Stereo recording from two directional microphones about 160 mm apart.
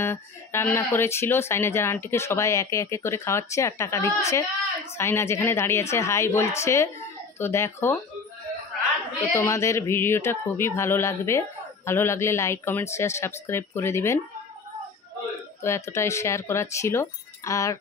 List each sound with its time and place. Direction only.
0.0 s speech: 15° left (ahead or behind)
9.3 s speech: 20° left (ahead or behind)
15.6 s speech: 15° left (ahead or behind)